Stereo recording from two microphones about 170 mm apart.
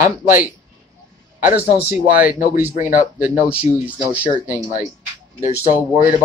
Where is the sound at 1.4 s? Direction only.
10° right (ahead or behind).